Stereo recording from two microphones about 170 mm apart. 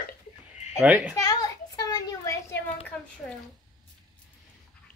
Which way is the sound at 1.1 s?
20° left (ahead or behind).